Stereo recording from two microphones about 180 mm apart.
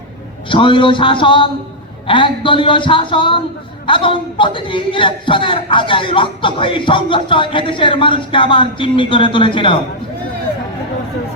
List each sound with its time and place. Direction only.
0.4 s a man's voice: 30° left (ahead or behind)